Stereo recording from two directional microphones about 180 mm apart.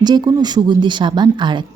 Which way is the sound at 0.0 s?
25° right (ahead or behind).